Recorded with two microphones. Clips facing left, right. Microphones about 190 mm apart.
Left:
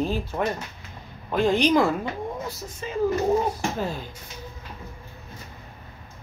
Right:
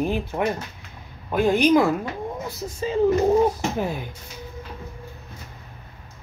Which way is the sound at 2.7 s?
30° right (ahead or behind).